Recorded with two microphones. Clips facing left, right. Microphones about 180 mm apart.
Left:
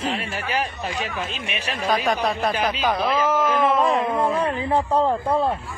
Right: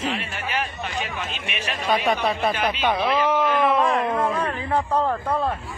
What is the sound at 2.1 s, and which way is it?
A man's voice, centre (ahead or behind).